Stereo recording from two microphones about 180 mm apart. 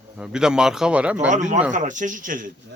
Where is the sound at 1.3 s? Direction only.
40° right (ahead or behind).